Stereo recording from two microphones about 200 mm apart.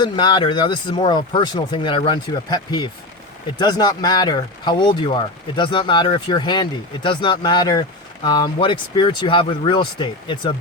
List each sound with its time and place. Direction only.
0.0 s speech: 20° left (ahead or behind)